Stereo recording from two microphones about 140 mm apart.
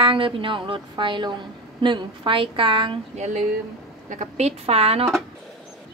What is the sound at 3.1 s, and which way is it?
Speech, 55° right (ahead or behind).